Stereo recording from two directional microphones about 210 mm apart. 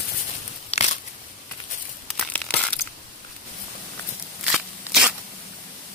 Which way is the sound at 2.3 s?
5° left (ahead or behind).